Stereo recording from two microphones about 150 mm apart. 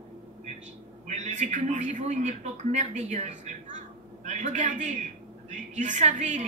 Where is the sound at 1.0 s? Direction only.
55° right (ahead or behind).